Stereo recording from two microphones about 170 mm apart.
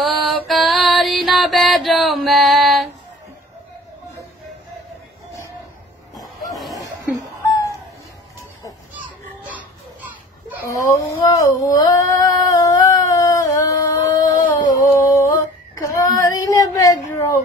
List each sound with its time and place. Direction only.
0.0 s music: centre (ahead or behind)
7.4 s music: 20° left (ahead or behind)
10.7 s a sound: 20° left (ahead or behind)
15.7 s child singing: 20° left (ahead or behind)